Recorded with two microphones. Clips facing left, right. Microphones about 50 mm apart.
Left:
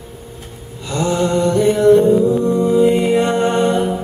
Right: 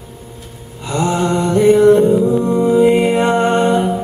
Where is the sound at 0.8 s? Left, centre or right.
Right.